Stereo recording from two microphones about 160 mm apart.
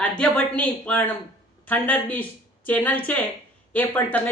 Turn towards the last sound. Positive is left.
turn(degrees=10)  # may be behind; listen again after turning